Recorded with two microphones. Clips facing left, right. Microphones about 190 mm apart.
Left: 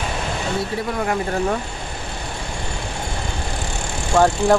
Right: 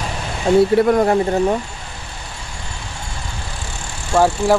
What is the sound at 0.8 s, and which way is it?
Speech, 65° right (ahead or behind).